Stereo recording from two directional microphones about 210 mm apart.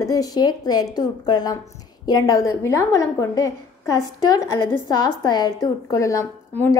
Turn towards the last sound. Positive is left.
turn(degrees=10)  # may be behind; listen again after turning